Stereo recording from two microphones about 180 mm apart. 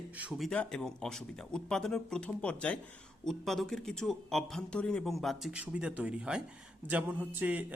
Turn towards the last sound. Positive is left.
turn(degrees=-10)  # may be behind; listen again after turning